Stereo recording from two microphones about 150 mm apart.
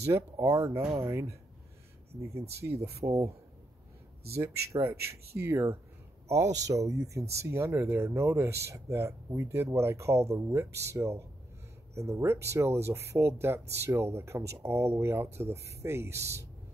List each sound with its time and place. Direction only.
0.0 s speech: 20° right (ahead or behind)
2.6 s speech: 20° right (ahead or behind)
4.4 s a man's voice: 15° right (ahead or behind)